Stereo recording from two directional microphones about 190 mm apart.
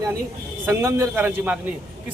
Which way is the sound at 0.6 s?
15° right (ahead or behind).